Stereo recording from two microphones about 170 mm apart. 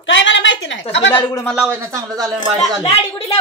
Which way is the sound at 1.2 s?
25° left (ahead or behind).